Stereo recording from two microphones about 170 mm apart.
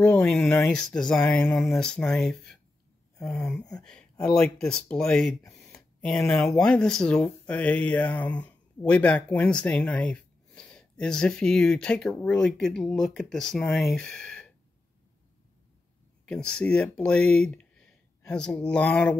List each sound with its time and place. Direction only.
0.0 s speech: 5° left (ahead or behind)
3.3 s a sound: 15° left (ahead or behind)
3.6 s speech: 5° left (ahead or behind)
16.3 s speech: 5° left (ahead or behind)